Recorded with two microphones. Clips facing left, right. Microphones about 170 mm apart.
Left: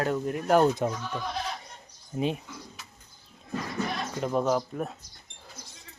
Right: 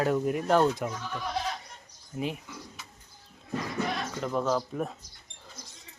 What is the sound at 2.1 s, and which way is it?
Speech, 25° left (ahead or behind).